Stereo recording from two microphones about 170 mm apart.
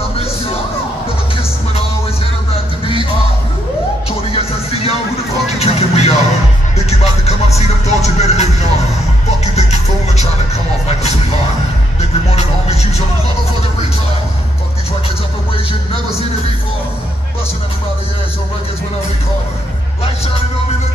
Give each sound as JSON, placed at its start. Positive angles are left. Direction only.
{"t": 4.3, "sound": "music", "side_deg": 35}
{"t": 5.6, "sound": "vehicle", "side_deg": 40}
{"t": 6.9, "sound": "music", "side_deg": 40}
{"t": 9.6, "sound": "music", "side_deg": 40}
{"t": 12.0, "sound": "music", "side_deg": 40}